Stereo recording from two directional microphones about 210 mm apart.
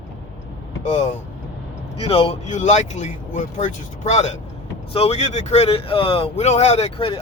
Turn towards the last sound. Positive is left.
turn(degrees=30)  # may be behind; listen again after turning